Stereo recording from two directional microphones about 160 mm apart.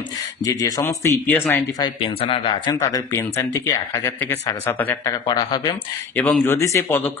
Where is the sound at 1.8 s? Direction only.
25° left (ahead or behind).